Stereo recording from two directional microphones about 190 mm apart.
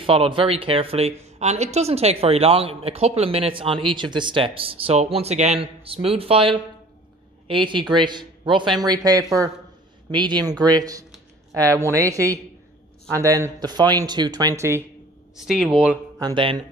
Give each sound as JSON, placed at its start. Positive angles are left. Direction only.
{"t": 0.0, "sound": "a man's voice", "side_deg": -30}
{"t": 15.3, "sound": "speech", "side_deg": 0}
{"t": 16.2, "sound": "a man's voice", "side_deg": -25}